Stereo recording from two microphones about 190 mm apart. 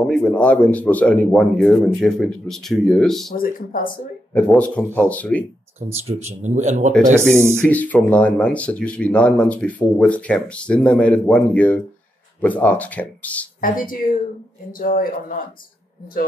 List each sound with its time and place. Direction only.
0.0 s speech: 5° left (ahead or behind)
3.3 s speech: 50° left (ahead or behind)
4.3 s speech: 10° left (ahead or behind)
6.2 s speech: 40° right (ahead or behind)
7.2 s speech: 15° right (ahead or behind)
7.5 s speech: 5° left (ahead or behind)
13.6 s speech: 45° left (ahead or behind)